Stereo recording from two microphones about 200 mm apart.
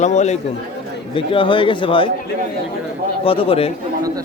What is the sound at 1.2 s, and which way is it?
Speech, 25° left (ahead or behind).